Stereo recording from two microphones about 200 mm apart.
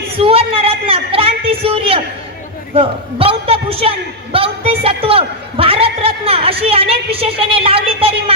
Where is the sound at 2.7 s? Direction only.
30° right (ahead or behind).